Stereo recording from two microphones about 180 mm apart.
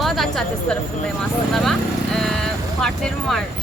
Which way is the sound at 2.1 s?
Centre (ahead or behind).